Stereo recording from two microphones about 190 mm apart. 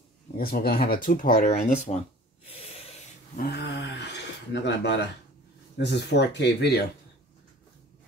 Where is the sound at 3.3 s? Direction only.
60° left (ahead or behind).